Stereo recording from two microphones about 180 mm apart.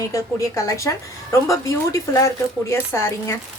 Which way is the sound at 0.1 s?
15° left (ahead or behind).